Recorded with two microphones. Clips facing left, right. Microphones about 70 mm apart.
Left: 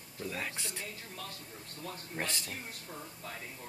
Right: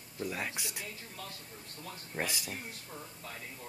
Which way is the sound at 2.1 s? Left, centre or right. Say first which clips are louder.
Right 2 dB; centre.